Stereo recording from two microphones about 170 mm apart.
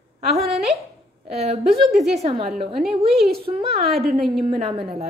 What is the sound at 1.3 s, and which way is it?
A woman's voice, 40° right (ahead or behind).